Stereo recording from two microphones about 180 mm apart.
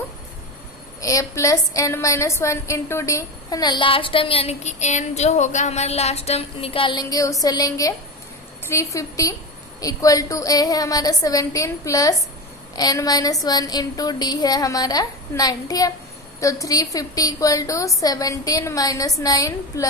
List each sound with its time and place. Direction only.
1.0 s a woman's voice: 20° left (ahead or behind)